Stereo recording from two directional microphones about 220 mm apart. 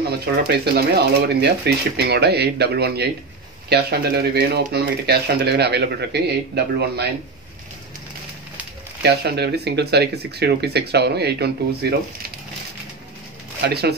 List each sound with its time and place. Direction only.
0.2 s speech: 45° right (ahead or behind)
9.0 s speech: 50° right (ahead or behind)
13.6 s speech: 50° right (ahead or behind)